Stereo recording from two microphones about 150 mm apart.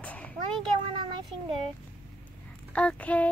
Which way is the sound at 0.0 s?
10° left (ahead or behind).